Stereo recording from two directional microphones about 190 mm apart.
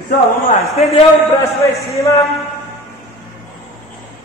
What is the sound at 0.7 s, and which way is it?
Speech, 35° left (ahead or behind).